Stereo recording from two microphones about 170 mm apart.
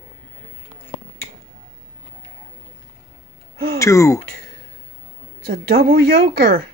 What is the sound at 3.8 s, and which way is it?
Speech, 20° left (ahead or behind).